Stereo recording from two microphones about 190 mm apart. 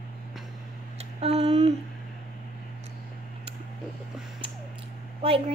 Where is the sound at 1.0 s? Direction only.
35° right (ahead or behind).